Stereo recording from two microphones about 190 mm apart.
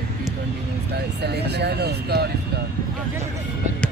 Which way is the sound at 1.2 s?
60° right (ahead or behind).